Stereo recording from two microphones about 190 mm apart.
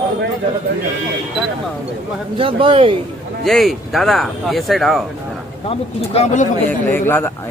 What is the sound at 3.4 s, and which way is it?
Speech, centre (ahead or behind).